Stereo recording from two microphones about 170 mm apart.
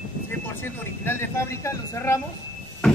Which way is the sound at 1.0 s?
15° left (ahead or behind).